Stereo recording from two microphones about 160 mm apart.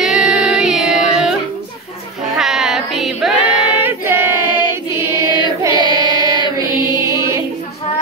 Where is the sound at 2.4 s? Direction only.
Centre (ahead or behind).